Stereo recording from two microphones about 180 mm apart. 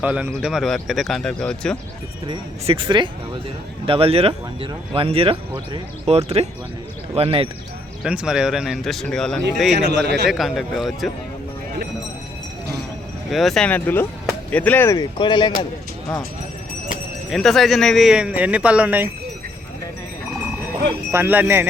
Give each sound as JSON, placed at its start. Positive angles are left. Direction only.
{"t": 0.0, "sound": "a man's voice", "side_deg": -10}
{"t": 2.2, "sound": "speech", "side_deg": -30}
{"t": 8.0, "sound": "a man's voice", "side_deg": -5}
{"t": 9.7, "sound": "a man's voice", "side_deg": -70}
{"t": 10.2, "sound": "a man's voice", "side_deg": 0}
{"t": 13.3, "sound": "speech", "side_deg": 0}
{"t": 15.2, "sound": "a man's voice", "side_deg": 25}
{"t": 17.2, "sound": "a man's voice", "side_deg": 0}
{"t": 21.1, "sound": "speech", "side_deg": -10}